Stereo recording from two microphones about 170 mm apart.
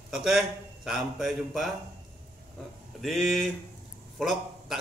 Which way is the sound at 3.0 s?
Centre (ahead or behind).